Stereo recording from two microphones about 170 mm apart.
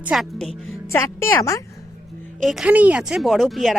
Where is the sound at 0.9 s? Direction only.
15° left (ahead or behind).